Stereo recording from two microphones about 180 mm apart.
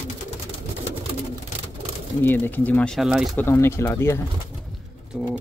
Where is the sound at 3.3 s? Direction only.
15° left (ahead or behind).